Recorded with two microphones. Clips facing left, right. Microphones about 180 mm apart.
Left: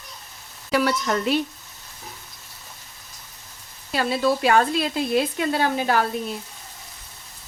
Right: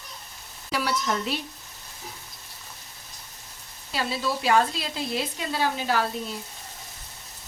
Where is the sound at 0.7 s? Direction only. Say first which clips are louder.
Left 5 dB; 55° left (ahead or behind).